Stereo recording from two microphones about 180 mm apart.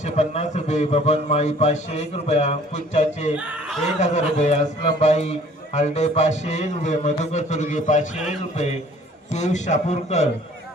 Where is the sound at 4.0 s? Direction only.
40° left (ahead or behind).